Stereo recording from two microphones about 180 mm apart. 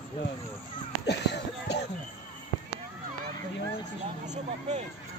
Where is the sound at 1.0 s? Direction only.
70° left (ahead or behind).